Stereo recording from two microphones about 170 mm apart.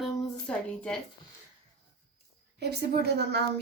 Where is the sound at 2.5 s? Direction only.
70° right (ahead or behind).